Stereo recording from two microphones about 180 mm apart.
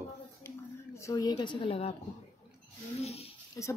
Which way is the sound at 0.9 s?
15° left (ahead or behind).